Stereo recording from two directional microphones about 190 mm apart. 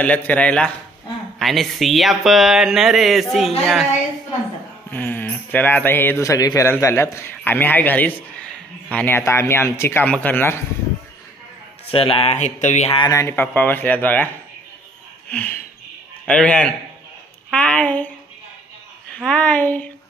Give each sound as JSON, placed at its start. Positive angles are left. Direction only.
{"t": 0.0, "sound": "speech", "side_deg": 5}
{"t": 4.9, "sound": "speech", "side_deg": 10}
{"t": 11.9, "sound": "speech", "side_deg": 30}
{"t": 13.1, "sound": "speech", "side_deg": 15}
{"t": 19.1, "sound": "speech", "side_deg": 5}